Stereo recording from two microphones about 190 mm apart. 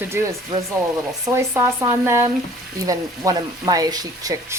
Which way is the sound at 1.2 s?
15° right (ahead or behind).